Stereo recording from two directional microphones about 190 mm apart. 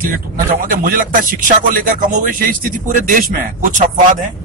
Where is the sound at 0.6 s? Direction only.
45° right (ahead or behind).